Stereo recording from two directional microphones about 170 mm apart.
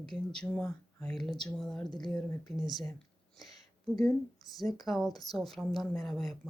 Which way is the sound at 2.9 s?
5° left (ahead or behind).